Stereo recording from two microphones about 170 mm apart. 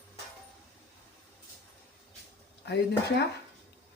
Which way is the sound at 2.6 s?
80° left.